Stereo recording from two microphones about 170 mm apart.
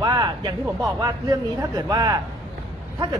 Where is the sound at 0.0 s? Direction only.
25° right (ahead or behind).